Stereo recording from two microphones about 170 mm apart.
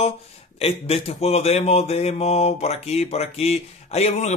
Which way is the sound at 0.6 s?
35° left (ahead or behind).